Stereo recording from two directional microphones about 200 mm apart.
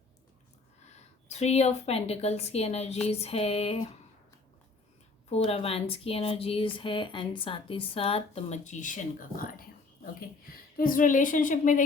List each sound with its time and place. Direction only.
0.9 s a woman's voice: 35° left (ahead or behind)
5.3 s a woman's voice: 30° left (ahead or behind)
10.8 s a woman's voice: 45° left (ahead or behind)